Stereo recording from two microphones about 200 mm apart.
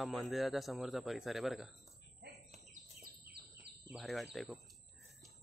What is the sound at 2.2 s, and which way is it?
Bird, 55° right (ahead or behind).